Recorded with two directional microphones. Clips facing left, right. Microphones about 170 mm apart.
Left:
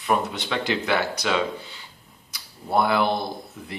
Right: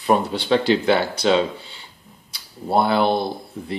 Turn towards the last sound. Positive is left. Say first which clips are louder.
# right 6 dB
turn(degrees=-30)  # may be behind; listen again after turning